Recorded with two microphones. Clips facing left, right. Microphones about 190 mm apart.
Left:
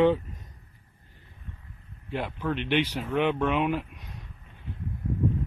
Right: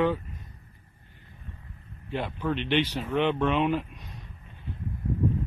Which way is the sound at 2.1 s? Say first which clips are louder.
Right 1 dB; 5° left (ahead or behind).